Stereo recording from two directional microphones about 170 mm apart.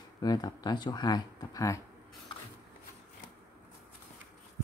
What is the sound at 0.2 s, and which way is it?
Speech, 25° left (ahead or behind).